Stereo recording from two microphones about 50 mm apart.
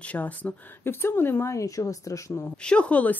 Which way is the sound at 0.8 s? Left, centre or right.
Left.